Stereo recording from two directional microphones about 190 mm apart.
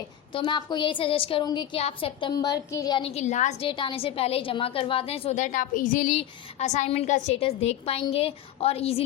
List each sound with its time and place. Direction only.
0.3 s a woman's voice: 25° left (ahead or behind); by 3.7 s 40° left (ahead or behind)
3.7 s a woman's voice: 25° left (ahead or behind)